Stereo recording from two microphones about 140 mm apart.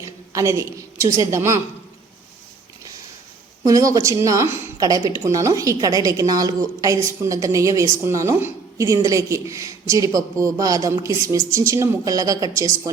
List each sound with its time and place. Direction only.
0.0 s a sound: 20° right (ahead or behind)
1.2 s a woman's voice: 20° right (ahead or behind)
3.6 s a woman's voice: 25° right (ahead or behind)